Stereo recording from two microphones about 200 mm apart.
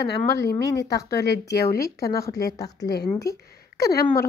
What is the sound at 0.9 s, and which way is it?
Speech, 55° left (ahead or behind).